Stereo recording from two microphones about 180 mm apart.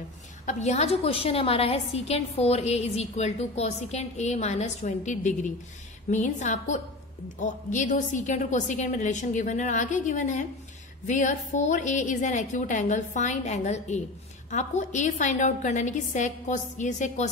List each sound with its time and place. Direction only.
0.5 s a woman's voice: 40° left (ahead or behind)